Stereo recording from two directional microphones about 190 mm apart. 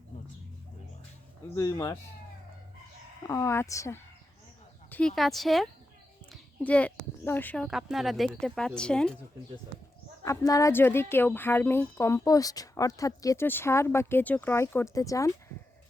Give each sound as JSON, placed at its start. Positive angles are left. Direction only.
{"t": 1.5, "sound": "a woman's voice", "side_deg": 20}
{"t": 3.2, "sound": "a woman's voice", "side_deg": 15}
{"t": 10.2, "sound": "a woman's voice", "side_deg": 20}